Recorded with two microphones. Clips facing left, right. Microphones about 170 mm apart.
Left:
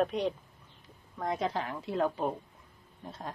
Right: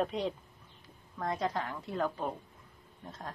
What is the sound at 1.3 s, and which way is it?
A woman's voice, 25° left (ahead or behind).